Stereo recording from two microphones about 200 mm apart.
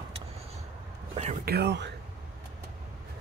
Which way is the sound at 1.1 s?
35° right (ahead or behind).